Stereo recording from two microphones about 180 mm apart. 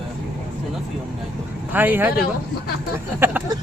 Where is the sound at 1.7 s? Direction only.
10° right (ahead or behind).